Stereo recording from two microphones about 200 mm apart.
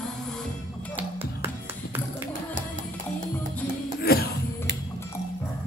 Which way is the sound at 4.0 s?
50° left (ahead or behind).